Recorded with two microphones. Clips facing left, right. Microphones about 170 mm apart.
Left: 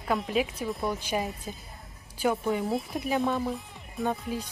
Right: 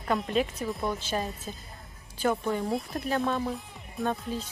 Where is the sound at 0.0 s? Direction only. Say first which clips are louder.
Even; centre (ahead or behind).